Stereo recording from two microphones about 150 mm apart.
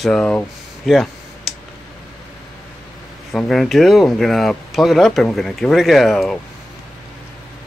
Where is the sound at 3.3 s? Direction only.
Centre (ahead or behind).